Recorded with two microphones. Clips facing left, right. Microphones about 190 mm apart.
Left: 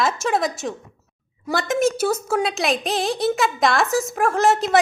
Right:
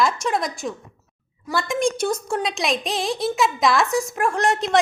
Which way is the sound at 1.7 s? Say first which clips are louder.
Left 3 dB; 5° left (ahead or behind).